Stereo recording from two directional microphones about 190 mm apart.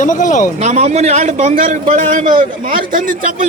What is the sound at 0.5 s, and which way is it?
A man's voice, 35° right (ahead or behind).